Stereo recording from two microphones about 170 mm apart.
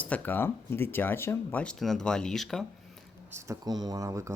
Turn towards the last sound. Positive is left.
turn(degrees=-20)  # may be behind; listen again after turning